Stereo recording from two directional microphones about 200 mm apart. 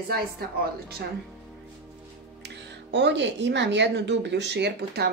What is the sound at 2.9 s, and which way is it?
Speech, 60° right (ahead or behind).